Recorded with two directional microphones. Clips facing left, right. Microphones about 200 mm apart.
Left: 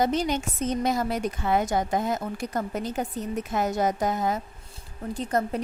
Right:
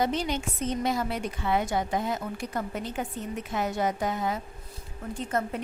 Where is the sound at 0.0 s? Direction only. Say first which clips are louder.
Left 3 dB; 45° left (ahead or behind).